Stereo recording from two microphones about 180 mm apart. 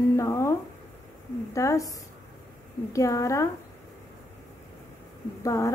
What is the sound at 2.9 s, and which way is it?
Speech, 15° left (ahead or behind).